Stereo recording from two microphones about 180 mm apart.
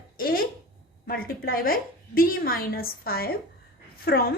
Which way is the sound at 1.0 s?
55° left (ahead or behind).